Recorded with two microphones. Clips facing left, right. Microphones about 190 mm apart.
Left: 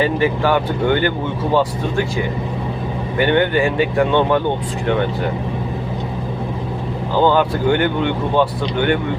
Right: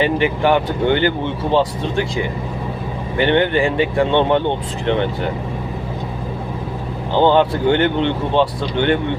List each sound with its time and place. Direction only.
0.0 s speech: 20° right (ahead or behind)
3.2 s speech: 25° right (ahead or behind)
7.1 s speech: 25° right (ahead or behind)